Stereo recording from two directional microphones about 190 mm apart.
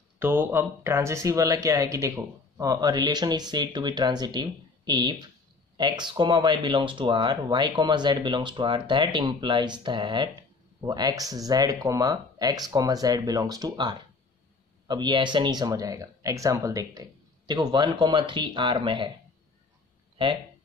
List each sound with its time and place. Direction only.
0.2 s speech: 10° right (ahead or behind)